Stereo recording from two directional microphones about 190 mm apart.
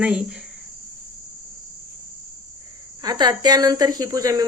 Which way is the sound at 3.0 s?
20° right (ahead or behind).